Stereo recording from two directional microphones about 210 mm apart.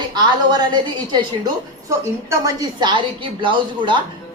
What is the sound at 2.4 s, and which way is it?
A woman's voice, 20° right (ahead or behind).